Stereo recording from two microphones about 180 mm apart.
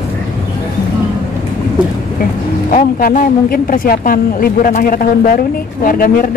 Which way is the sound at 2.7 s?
50° left (ahead or behind).